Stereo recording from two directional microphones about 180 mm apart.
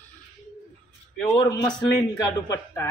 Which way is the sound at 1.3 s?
25° left (ahead or behind).